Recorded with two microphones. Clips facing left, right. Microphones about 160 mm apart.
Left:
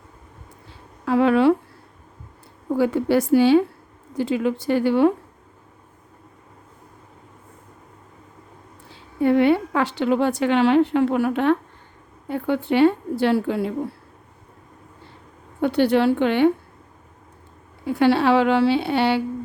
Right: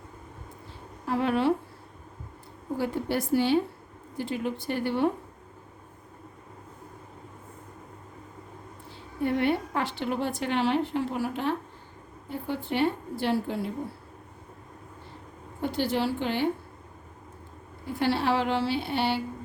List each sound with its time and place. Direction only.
1.0 s speech: 90° left
2.6 s speech: 90° left
9.2 s a woman's voice: 90° left
15.6 s a woman's voice: 70° left (ahead or behind)
17.8 s a woman's voice: 70° left (ahead or behind)